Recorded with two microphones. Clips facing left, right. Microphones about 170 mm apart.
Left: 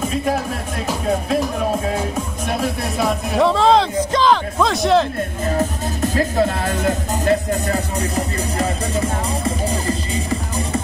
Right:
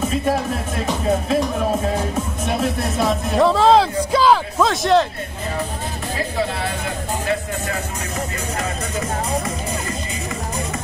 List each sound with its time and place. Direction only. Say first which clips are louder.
0.1 s speech: right 1 dB; centre (ahead or behind)
6.1 s music: left 4 dB; 45° left (ahead or behind)
9.4 s music: left 4 dB; 30° left (ahead or behind)